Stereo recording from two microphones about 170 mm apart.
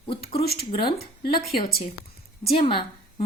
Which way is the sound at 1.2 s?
65° left (ahead or behind).